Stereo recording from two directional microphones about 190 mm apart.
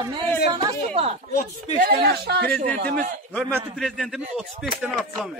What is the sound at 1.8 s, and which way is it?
Speech, 55° right (ahead or behind).